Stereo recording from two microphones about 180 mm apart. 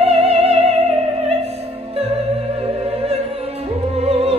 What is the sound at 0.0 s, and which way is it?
Music, 35° right (ahead or behind).